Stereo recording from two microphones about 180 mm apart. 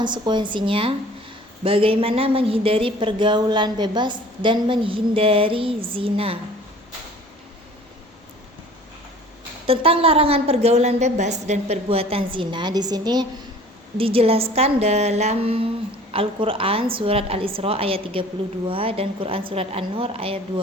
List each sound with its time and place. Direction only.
0.0 s speech: 25° right (ahead or behind)
9.6 s a woman's voice: 30° right (ahead or behind)